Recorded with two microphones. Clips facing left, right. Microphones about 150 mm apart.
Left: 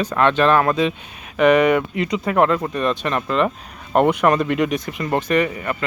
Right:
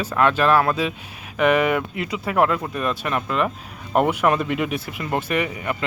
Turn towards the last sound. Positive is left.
turn(degrees=-10)  # may be behind; listen again after turning